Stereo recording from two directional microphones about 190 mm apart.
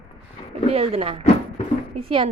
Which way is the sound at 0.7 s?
30° right (ahead or behind).